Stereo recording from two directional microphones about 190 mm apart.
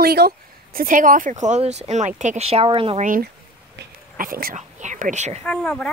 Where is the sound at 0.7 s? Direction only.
45° right (ahead or behind); by 3.0 s 25° right (ahead or behind).